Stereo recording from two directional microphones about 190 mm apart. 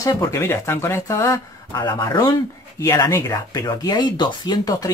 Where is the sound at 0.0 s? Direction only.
15° left (ahead or behind).